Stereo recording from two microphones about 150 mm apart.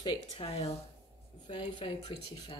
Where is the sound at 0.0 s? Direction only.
40° left (ahead or behind).